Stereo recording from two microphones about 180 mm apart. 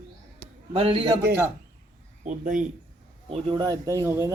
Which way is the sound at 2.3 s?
45° right (ahead or behind).